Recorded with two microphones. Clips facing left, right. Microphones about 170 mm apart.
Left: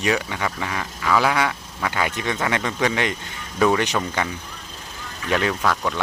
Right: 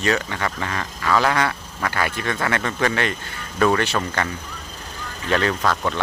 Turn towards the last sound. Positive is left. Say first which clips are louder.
# right 1 dB
turn(degrees=0)  # may be behind; listen again after turning